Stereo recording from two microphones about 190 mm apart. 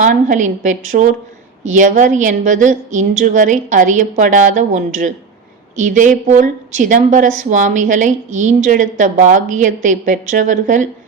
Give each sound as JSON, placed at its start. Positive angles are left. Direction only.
{"t": 0.0, "sound": "a woman's voice", "side_deg": -40}